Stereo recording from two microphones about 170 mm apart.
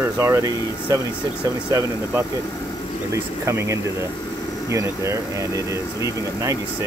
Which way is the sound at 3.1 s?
15° right (ahead or behind).